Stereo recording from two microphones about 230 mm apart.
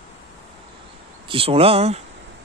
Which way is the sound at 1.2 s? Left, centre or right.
Right.